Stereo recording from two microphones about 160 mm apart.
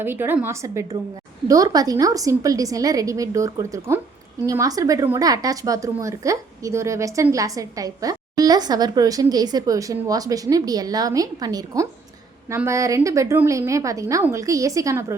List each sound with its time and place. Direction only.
0.0 s a woman's voice: 15° right (ahead or behind)